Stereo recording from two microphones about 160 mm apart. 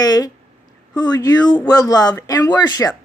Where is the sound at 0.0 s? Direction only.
25° left (ahead or behind).